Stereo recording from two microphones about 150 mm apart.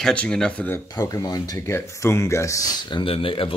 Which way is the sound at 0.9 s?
25° left (ahead or behind).